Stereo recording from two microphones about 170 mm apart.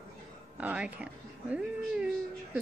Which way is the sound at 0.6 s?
10° right (ahead or behind).